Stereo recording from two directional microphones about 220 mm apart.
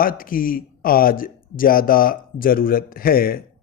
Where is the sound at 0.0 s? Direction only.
40° left (ahead or behind).